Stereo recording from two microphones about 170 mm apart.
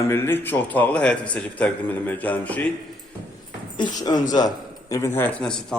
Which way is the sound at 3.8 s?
25° left (ahead or behind).